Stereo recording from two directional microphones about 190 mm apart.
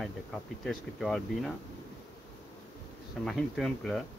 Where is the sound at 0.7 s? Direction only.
Centre (ahead or behind).